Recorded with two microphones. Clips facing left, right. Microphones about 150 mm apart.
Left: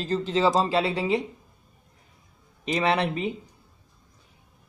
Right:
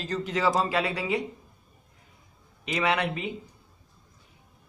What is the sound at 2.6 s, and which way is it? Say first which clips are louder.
Speech: left 3 dB; 35° left (ahead or behind).